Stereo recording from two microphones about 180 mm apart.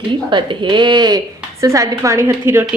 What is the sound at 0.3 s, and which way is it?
A woman's voice, 25° right (ahead or behind).